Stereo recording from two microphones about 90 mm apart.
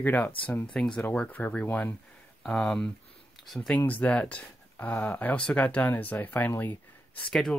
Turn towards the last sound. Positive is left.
turn(degrees=20)  # may be behind; listen again after turning